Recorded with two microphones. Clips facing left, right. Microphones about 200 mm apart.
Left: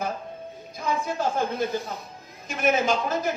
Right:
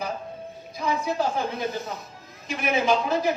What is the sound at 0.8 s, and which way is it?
Speech, 50° left (ahead or behind).